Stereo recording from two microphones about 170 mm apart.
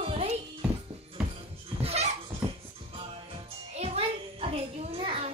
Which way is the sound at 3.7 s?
35° right (ahead or behind).